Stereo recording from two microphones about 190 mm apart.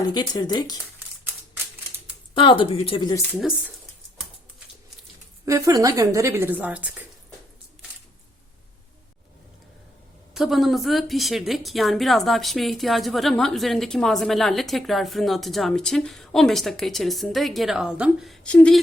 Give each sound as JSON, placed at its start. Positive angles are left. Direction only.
{"t": 0.0, "sound": "speech", "side_deg": 20}
{"t": 2.3, "sound": "speech", "side_deg": 25}
{"t": 5.5, "sound": "a woman's voice", "side_deg": -15}
{"t": 10.3, "sound": "a woman's voice", "side_deg": 0}